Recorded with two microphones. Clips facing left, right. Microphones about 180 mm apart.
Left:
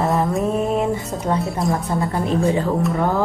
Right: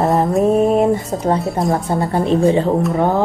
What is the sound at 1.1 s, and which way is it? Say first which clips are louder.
Speech: right 5 dB; 40° right (ahead or behind).